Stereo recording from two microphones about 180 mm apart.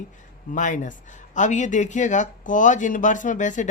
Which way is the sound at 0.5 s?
45° left (ahead or behind).